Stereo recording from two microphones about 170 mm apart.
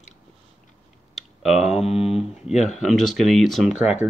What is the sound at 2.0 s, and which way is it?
Speech, centre (ahead or behind).